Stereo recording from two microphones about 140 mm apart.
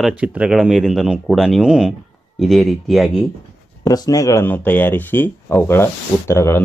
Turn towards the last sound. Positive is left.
turn(degrees=20)  # may be behind; listen again after turning